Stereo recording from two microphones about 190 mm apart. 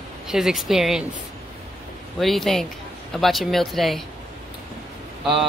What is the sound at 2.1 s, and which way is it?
Speech, centre (ahead or behind).